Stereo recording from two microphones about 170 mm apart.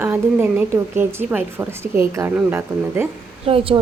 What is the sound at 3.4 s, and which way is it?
Speech, 30° right (ahead or behind).